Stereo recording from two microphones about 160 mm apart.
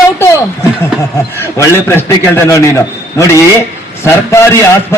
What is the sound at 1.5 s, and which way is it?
A man's voice, 15° left (ahead or behind).